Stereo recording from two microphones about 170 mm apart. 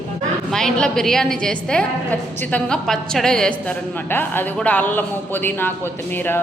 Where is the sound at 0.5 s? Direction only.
5° left (ahead or behind).